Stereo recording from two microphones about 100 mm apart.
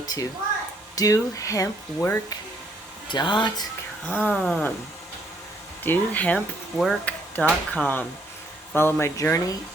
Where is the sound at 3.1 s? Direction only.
50° left (ahead or behind).